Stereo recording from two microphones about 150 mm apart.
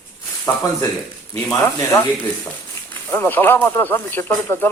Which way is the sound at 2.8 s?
15° left (ahead or behind).